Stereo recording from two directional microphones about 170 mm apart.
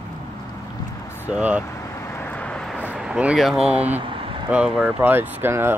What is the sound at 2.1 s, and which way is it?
Vehicle, 10° left (ahead or behind).